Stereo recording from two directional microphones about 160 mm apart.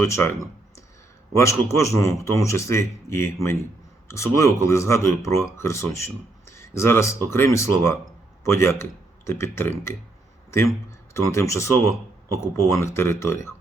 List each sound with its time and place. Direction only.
0.0 s a man's voice: 15° left (ahead or behind)
1.4 s a man's voice: 20° left (ahead or behind)
11.1 s a man's voice: 20° left (ahead or behind)